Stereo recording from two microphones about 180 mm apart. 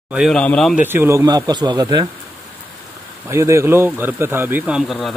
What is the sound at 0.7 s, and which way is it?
A man's voice, 10° right (ahead or behind).